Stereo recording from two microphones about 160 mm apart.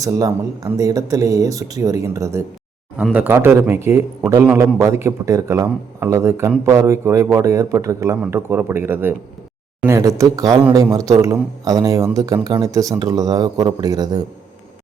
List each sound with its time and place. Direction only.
0.0 s speech: 20° right (ahead or behind)